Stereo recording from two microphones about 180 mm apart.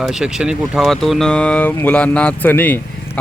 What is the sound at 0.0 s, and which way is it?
Speech, 5° right (ahead or behind).